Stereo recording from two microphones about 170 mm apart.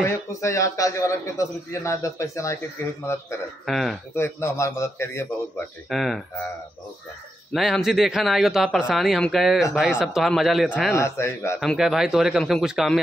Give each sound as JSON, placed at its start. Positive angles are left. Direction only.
{"t": 0.0, "sound": "a man's voice", "side_deg": 15}
{"t": 3.6, "sound": "speech", "side_deg": 0}
{"t": 4.1, "sound": "a man's voice", "side_deg": 15}
{"t": 5.9, "sound": "speech", "side_deg": 0}
{"t": 7.5, "sound": "speech", "side_deg": 0}
{"t": 11.0, "sound": "a man's voice", "side_deg": 15}
{"t": 11.6, "sound": "speech", "side_deg": 0}